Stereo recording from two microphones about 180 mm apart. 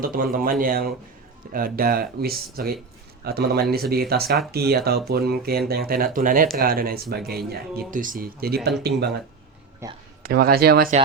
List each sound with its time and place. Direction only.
0.0 s speech: 55° right (ahead or behind)
9.8 s speech: 15° right (ahead or behind)
10.2 s speech: 55° right (ahead or behind)